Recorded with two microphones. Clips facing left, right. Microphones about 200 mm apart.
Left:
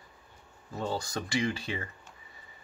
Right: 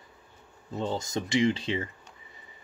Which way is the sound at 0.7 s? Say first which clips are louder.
Right 3 dB; 20° right (ahead or behind).